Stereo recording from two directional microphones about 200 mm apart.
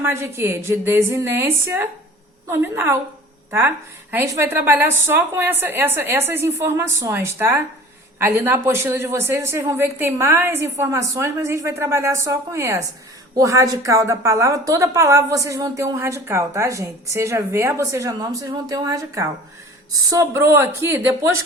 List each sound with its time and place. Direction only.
0.0 s a woman's voice: 10° right (ahead or behind)
4.1 s a woman's voice: 10° right (ahead or behind)